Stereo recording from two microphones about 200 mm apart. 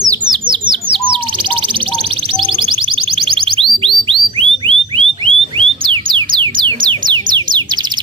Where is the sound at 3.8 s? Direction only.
25° right (ahead or behind).